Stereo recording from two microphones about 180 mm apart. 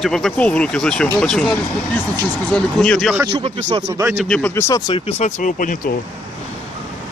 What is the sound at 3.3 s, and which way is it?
Speech, 35° right (ahead or behind).